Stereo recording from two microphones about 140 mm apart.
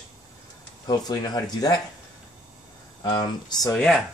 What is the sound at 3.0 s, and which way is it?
Speech, 30° left (ahead or behind).